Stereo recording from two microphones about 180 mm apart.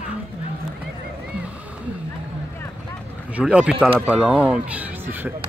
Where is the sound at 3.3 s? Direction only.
5° right (ahead or behind).